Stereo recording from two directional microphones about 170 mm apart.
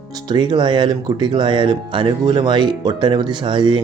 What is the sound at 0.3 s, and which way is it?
A man's voice, 25° right (ahead or behind).